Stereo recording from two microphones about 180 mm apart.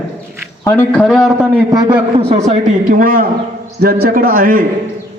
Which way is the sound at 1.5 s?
20° right (ahead or behind).